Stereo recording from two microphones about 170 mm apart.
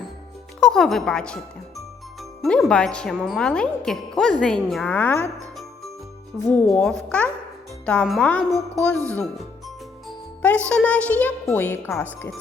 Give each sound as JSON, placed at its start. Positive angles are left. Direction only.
{"t": 0.6, "sound": "speech", "side_deg": 0}
{"t": 6.4, "sound": "speech", "side_deg": 5}
{"t": 10.7, "sound": "a child's voice", "side_deg": 5}